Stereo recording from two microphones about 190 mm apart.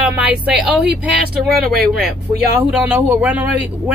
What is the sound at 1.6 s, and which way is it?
Speech, 50° right (ahead or behind).